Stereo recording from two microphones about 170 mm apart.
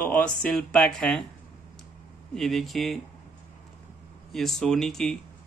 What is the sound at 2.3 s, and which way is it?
Speech, centre (ahead or behind).